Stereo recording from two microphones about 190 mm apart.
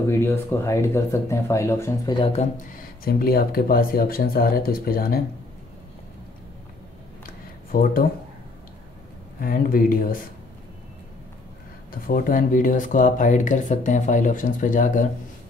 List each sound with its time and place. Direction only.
0.1 s speech: 10° left (ahead or behind)
2.1 s speech: 30° left (ahead or behind)
2.5 s speech: 45° left (ahead or behind)
7.7 s speech: 50° left (ahead or behind)
9.4 s speech: 50° left (ahead or behind)
11.9 s speech: 45° left (ahead or behind)